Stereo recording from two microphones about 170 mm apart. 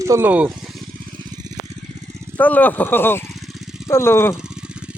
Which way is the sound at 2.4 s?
10° left (ahead or behind).